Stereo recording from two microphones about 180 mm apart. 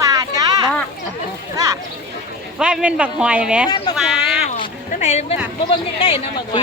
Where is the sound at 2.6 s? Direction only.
5° right (ahead or behind).